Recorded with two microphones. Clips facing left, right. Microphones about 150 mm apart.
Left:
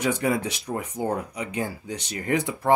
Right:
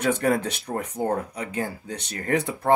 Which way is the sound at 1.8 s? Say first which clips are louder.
Left 1 dB; 55° right (ahead or behind).